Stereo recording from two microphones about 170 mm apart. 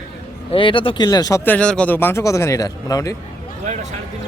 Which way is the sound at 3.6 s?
40° right (ahead or behind).